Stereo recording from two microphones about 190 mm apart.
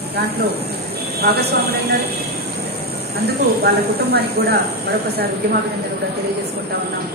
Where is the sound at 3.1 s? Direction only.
55° right (ahead or behind).